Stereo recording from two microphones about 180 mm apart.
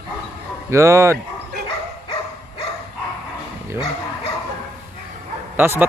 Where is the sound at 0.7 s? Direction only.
15° right (ahead or behind).